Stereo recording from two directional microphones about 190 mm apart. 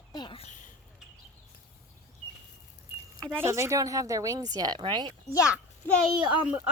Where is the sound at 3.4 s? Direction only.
15° right (ahead or behind).